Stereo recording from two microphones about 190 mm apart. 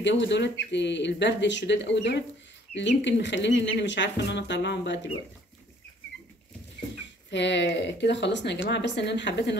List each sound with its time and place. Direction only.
0.0 s speech: 70° left (ahead or behind)
7.2 s speech: 65° left (ahead or behind)